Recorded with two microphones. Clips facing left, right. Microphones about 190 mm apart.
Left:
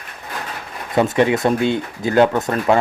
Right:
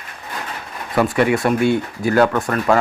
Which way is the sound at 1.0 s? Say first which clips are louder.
Left 1 dB; 20° left (ahead or behind).